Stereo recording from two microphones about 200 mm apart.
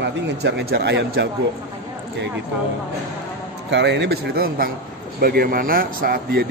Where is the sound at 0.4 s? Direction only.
55° right (ahead or behind).